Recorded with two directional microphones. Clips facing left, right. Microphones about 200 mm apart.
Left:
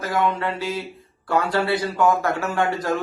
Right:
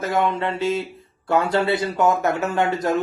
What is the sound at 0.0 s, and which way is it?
Speech, 25° right (ahead or behind).